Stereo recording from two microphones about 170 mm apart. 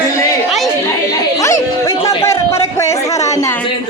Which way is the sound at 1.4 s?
20° left (ahead or behind).